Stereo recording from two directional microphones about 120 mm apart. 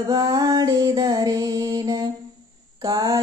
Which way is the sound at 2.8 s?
30° right (ahead or behind).